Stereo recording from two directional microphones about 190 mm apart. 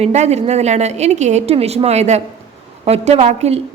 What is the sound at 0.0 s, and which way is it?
A woman's voice, 35° right (ahead or behind).